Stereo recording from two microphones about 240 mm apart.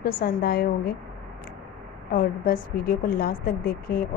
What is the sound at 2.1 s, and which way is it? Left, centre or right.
Speech, left.